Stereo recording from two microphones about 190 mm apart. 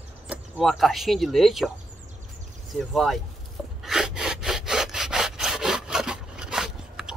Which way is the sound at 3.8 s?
Centre (ahead or behind).